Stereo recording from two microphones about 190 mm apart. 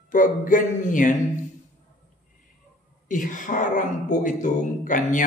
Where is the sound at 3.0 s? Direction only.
45° left (ahead or behind).